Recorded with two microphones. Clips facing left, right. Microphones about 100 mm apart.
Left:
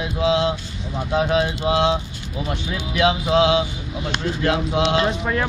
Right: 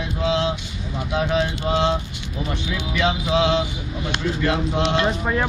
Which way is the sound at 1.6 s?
5° left (ahead or behind).